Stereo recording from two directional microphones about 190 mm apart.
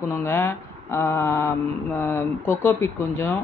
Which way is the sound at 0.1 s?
10° left (ahead or behind).